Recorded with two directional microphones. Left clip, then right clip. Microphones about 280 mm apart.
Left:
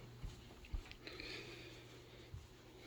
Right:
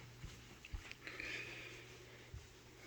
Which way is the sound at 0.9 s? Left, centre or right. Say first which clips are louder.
Right 4 dB; centre.